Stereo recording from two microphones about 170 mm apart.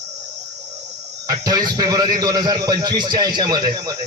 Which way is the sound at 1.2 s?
20° right (ahead or behind).